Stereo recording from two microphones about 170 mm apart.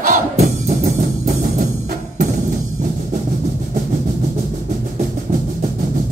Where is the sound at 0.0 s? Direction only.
45° right (ahead or behind).